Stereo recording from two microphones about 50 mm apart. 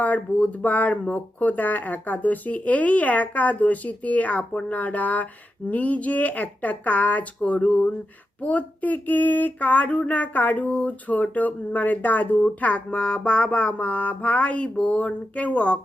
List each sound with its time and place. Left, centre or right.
0.0 s speech: left
12.5 s music: left